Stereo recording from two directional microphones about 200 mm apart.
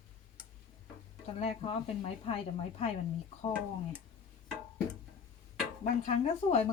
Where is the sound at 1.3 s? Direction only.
30° left (ahead or behind).